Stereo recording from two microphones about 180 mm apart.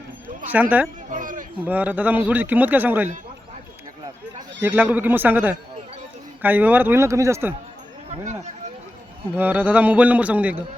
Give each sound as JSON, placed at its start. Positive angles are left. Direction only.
{"t": 0.5, "sound": "a man's voice", "side_deg": -10}
{"t": 1.1, "sound": "a sound", "side_deg": -45}
{"t": 1.5, "sound": "a man's voice", "side_deg": -10}
{"t": 4.6, "sound": "a man's voice", "side_deg": -10}
{"t": 8.1, "sound": "speech", "side_deg": -40}
{"t": 9.3, "sound": "a man's voice", "side_deg": -10}